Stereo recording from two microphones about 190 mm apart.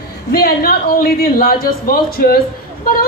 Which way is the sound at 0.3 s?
55° left (ahead or behind).